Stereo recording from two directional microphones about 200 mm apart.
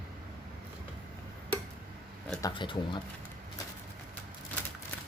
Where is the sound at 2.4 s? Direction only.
20° left (ahead or behind).